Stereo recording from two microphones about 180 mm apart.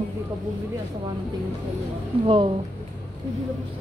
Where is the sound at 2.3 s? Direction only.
30° right (ahead or behind).